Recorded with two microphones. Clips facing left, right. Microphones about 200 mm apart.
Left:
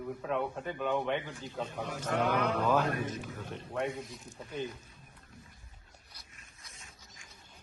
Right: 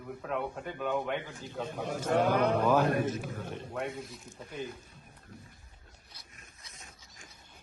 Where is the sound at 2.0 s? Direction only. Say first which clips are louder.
Right 4 dB; 45° right (ahead or behind).